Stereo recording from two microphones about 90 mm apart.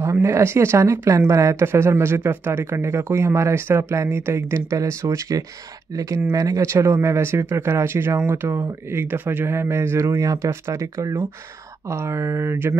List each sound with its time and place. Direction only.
0.0 s speech: 35° right (ahead or behind)